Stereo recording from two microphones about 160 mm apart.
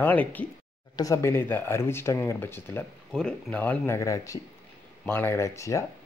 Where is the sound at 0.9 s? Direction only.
20° left (ahead or behind).